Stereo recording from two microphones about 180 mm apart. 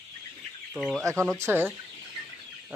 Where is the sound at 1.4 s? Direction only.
10° right (ahead or behind).